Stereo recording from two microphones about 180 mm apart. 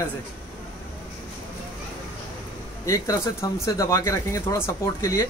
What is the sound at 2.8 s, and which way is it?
Speech, 15° left (ahead or behind).